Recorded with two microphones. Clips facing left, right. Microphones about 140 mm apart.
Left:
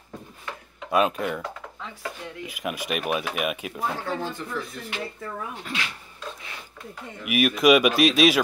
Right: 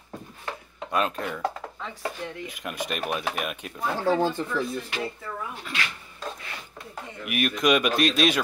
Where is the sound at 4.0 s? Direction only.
30° right (ahead or behind).